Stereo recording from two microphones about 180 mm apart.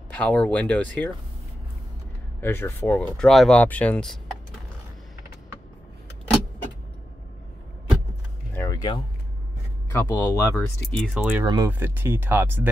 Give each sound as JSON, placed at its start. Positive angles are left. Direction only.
{"t": 0.1, "sound": "speech", "side_deg": 10}
{"t": 2.4, "sound": "speech", "side_deg": 15}
{"t": 8.5, "sound": "a sound", "side_deg": 20}
{"t": 9.9, "sound": "speech", "side_deg": 15}
{"t": 11.1, "sound": "speech", "side_deg": -5}
{"t": 11.4, "sound": "speech", "side_deg": -20}
{"t": 11.7, "sound": "speech", "side_deg": -10}